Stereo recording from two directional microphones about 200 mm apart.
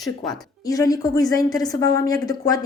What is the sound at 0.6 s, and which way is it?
A woman's voice, 15° left (ahead or behind).